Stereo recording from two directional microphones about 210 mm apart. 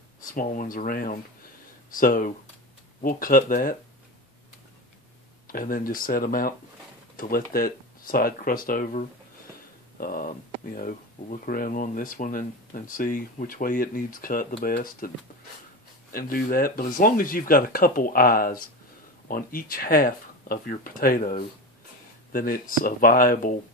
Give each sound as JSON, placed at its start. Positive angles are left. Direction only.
{"t": 0.2, "sound": "speech", "side_deg": 40}
{"t": 5.5, "sound": "speech", "side_deg": 40}
{"t": 16.1, "sound": "speech", "side_deg": 45}